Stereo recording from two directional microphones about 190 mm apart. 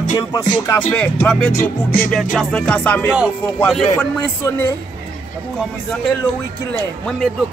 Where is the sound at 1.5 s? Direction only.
50° left (ahead or behind).